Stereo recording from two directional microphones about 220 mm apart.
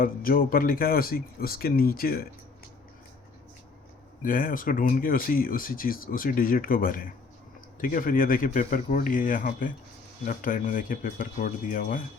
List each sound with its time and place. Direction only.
0.0 s speech: 40° left (ahead or behind)
4.2 s speech: 40° left (ahead or behind)